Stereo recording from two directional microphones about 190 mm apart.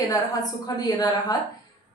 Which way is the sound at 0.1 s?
20° left (ahead or behind).